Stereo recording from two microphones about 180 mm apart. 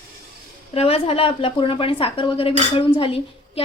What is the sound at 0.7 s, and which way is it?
A woman's voice, 35° left (ahead or behind).